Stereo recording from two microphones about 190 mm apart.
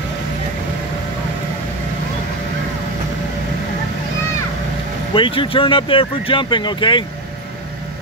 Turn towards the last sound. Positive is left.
turn(degrees=25)  # may be behind; listen again after turning